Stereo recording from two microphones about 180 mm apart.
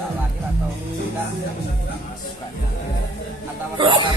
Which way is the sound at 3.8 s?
25° right (ahead or behind).